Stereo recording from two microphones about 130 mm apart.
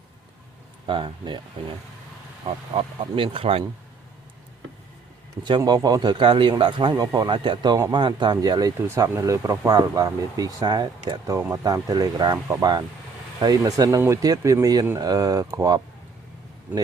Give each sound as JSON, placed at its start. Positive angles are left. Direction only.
{"t": 0.9, "sound": "speech", "side_deg": -40}
{"t": 2.5, "sound": "speech", "side_deg": -45}
{"t": 5.5, "sound": "speech", "side_deg": -30}
{"t": 11.3, "sound": "speech", "side_deg": -20}
{"t": 11.6, "sound": "speech", "side_deg": -30}